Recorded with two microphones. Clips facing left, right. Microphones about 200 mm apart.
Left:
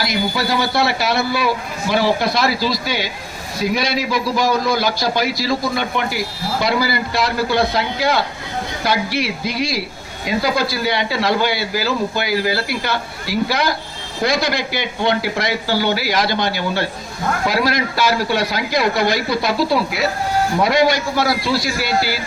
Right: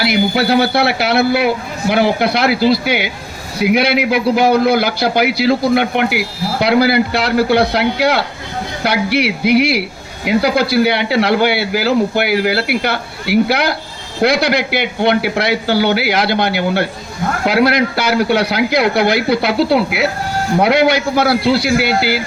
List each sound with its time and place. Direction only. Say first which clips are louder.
0.0 s a man's voice: right 6 dB; 65° right (ahead or behind)